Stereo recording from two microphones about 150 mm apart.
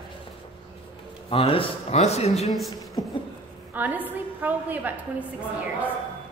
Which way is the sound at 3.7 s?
10° right (ahead or behind).